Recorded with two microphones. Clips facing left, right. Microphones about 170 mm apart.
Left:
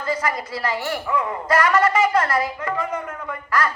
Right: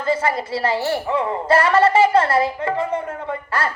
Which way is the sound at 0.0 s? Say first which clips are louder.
Right 4 dB; 30° right (ahead or behind).